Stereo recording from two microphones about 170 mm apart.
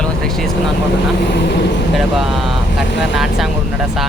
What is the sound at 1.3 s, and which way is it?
Speech, 85° left.